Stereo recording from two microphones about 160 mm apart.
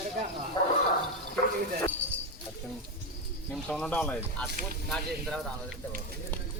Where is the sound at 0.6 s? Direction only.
25° left (ahead or behind).